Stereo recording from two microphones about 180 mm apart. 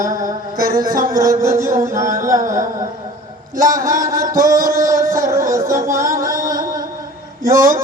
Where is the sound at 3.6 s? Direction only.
20° right (ahead or behind).